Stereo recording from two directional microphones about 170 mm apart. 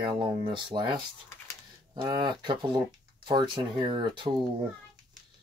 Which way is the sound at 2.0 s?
25° right (ahead or behind).